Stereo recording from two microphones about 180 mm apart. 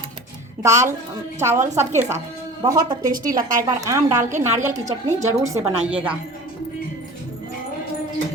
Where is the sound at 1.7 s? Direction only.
15° right (ahead or behind).